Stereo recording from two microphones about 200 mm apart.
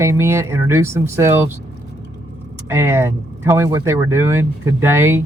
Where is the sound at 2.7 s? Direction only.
15° right (ahead or behind).